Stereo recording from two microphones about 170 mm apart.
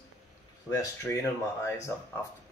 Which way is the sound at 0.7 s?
20° left (ahead or behind).